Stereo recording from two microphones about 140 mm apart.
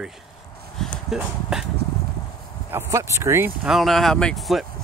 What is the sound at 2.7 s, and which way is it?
Speech, 20° right (ahead or behind).